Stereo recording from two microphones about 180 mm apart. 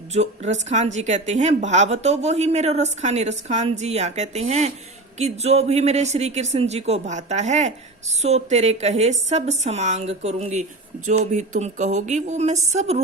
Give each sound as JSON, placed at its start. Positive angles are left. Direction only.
{"t": 0.1, "sound": "a woman's voice", "side_deg": -40}